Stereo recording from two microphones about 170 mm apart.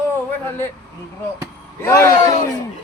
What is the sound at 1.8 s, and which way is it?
Speech, 15° left (ahead or behind).